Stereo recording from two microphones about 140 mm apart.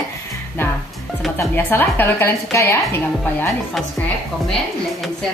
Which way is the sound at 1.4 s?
15° left (ahead or behind).